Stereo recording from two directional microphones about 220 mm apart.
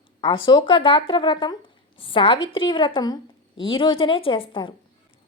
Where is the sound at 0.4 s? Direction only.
20° left (ahead or behind).